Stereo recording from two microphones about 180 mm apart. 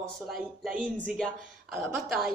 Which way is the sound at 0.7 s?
50° right (ahead or behind).